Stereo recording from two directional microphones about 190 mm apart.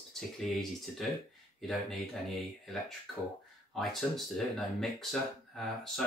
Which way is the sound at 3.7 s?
Centre (ahead or behind).